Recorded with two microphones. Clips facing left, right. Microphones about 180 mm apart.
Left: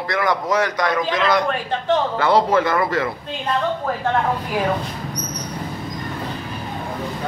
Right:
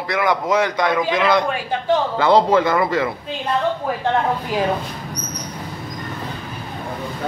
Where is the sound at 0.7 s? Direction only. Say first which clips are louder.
Right 2 dB; 25° right (ahead or behind).